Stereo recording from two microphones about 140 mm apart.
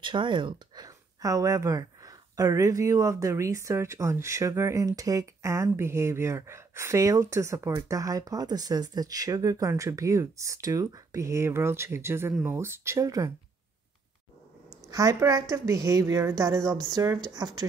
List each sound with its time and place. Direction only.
0.0 s speech: 35° right (ahead or behind)
14.9 s speech: 25° right (ahead or behind)